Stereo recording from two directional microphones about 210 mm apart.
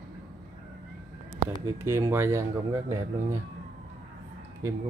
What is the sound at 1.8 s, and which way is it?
Speech, 15° right (ahead or behind).